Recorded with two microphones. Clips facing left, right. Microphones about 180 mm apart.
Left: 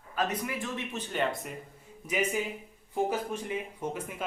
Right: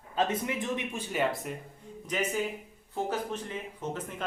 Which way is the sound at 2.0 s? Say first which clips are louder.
Left 1 dB; 10° left (ahead or behind).